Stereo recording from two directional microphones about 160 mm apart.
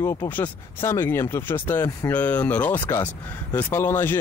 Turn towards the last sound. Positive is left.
turn(degrees=15)  # may be behind; listen again after turning